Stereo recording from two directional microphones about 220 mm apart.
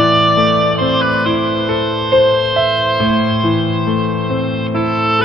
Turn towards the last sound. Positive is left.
turn(degrees=0)  # may be behind; listen again after turning